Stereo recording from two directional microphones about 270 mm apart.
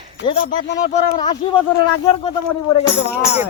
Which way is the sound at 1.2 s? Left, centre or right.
Centre.